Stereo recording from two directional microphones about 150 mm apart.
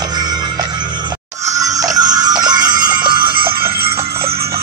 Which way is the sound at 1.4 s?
20° right (ahead or behind).